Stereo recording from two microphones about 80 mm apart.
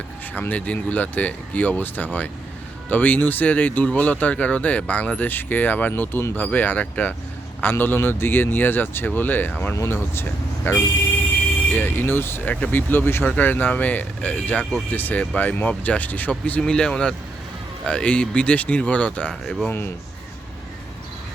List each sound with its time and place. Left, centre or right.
0.3 s speech: centre
9.7 s speech: left
16.5 s speech: centre
19.3 s speech: centre